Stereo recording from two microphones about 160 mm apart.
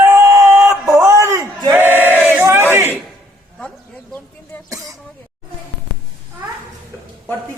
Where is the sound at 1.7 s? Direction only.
10° right (ahead or behind).